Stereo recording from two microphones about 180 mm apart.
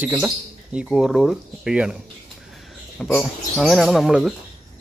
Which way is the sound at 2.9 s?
Centre (ahead or behind).